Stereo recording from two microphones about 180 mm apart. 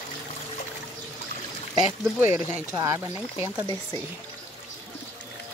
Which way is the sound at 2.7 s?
15° right (ahead or behind).